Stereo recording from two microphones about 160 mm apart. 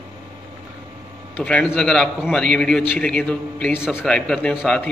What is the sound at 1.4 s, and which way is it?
A man's voice, 10° left (ahead or behind).